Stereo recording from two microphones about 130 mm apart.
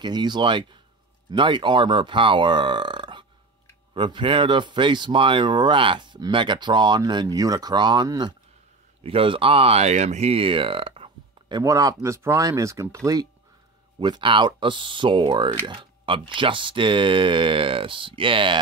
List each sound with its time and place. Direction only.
0.0 s speech: 35° right (ahead or behind)
9.0 s speech: 45° right (ahead or behind)
11.6 s speech: 25° right (ahead or behind); by 18.6 s 40° right (ahead or behind)